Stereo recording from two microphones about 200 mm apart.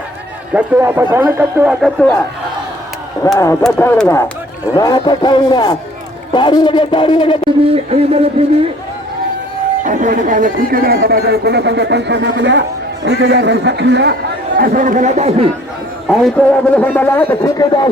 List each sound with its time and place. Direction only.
0.5 s speech: 10° right (ahead or behind)
1.8 s a man's voice: 5° left (ahead or behind)
3.6 s a man's voice: 5° left (ahead or behind)
4.8 s speech: 20° left (ahead or behind)
7.6 s a sound: 30° right (ahead or behind)
9.8 s a man's voice: 40° right (ahead or behind)
16.0 s a man's voice: 5° left (ahead or behind)